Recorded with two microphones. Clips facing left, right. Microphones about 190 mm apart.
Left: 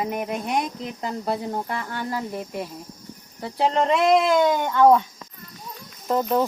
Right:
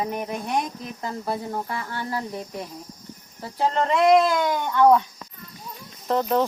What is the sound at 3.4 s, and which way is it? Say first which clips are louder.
Speech: left 2 dB; 20° left (ahead or behind).